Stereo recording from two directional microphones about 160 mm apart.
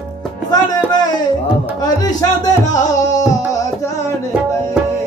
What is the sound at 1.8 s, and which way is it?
Music, 25° left (ahead or behind).